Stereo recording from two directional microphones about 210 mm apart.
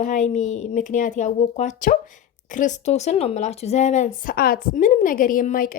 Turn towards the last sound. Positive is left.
turn(degrees=40)  # may be behind; listen again after turning